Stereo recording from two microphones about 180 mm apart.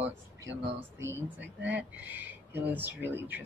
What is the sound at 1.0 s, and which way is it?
A woman's voice, 15° right (ahead or behind).